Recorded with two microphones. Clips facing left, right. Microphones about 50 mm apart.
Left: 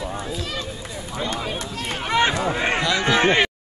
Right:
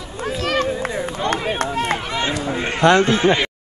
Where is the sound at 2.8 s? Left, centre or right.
Right.